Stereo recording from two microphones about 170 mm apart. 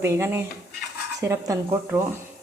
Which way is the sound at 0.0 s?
15° right (ahead or behind).